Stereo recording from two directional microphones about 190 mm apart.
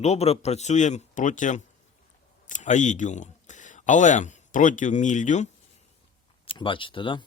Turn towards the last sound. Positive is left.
turn(degrees=25)  # may be behind; listen again after turning